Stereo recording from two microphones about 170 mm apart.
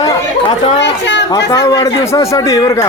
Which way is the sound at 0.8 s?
90° left.